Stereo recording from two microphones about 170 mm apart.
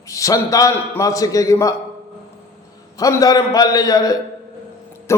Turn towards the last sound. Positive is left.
turn(degrees=15)  # may be behind; listen again after turning